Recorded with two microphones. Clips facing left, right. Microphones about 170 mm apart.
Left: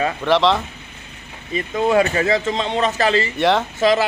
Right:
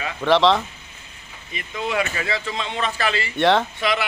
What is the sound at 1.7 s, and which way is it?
Speech, 45° left (ahead or behind).